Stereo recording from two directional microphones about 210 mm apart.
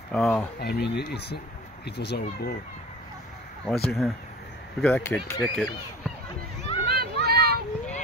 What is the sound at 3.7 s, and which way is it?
Speech, centre (ahead or behind).